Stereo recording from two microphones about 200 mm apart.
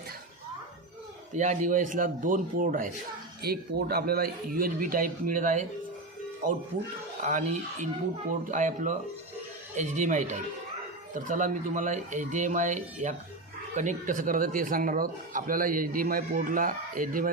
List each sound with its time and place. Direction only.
1.3 s speech: 35° right (ahead or behind)
7.2 s speech: 40° right (ahead or behind)